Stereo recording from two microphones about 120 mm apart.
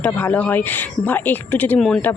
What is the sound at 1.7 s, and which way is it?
Speech, 5° left (ahead or behind).